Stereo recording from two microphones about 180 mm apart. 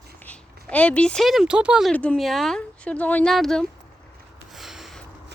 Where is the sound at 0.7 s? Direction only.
5° left (ahead or behind).